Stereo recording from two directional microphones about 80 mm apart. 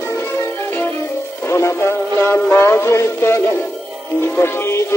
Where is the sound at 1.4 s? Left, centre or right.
Left.